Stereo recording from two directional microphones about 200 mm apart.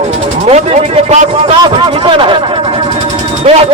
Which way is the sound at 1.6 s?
25° right (ahead or behind).